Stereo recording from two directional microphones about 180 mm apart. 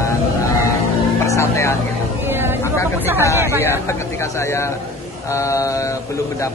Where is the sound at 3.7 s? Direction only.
15° left (ahead or behind).